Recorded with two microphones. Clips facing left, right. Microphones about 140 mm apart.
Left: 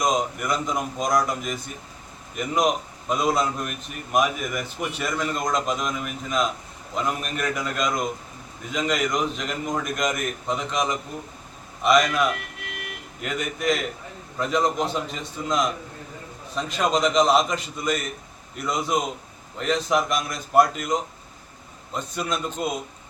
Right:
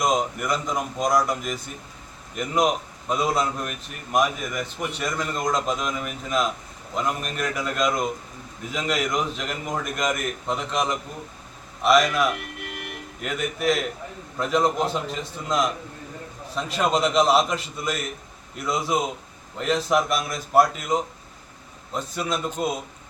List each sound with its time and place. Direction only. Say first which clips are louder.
0.0 s a man's voice: even; centre (ahead or behind)